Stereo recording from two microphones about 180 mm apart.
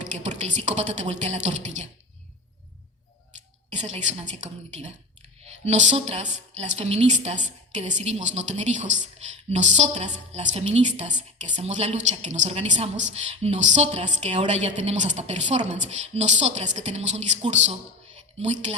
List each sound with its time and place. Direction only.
0.3 s a woman's voice: 40° right (ahead or behind)
3.7 s a woman's voice: 40° right (ahead or behind)